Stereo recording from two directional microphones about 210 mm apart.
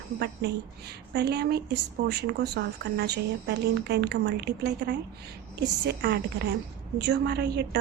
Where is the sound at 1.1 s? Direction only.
50° right (ahead or behind).